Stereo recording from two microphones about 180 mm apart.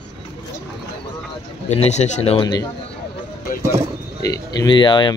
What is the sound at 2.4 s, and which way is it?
Speech, 25° left (ahead or behind).